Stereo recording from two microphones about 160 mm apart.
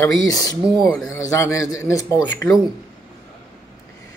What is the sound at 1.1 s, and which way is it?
Speech, 20° left (ahead or behind).